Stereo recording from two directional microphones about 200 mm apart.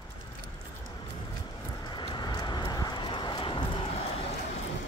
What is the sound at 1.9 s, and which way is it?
Vehicle, 25° left (ahead or behind).